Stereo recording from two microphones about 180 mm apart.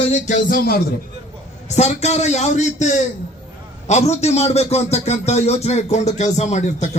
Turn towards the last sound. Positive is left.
turn(degrees=40)  # may be behind; listen again after turning